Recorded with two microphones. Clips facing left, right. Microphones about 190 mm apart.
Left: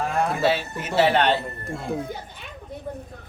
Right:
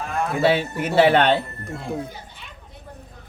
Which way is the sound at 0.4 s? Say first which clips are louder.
Right 3 dB; 55° right (ahead or behind).